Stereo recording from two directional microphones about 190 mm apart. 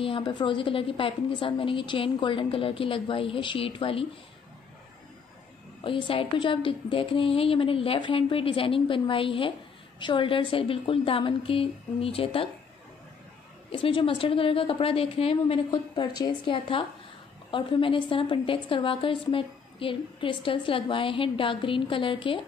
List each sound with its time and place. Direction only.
0.0 s a woman's voice: 30° left (ahead or behind)
5.9 s a woman's voice: 25° left (ahead or behind)
13.7 s a woman's voice: 30° left (ahead or behind)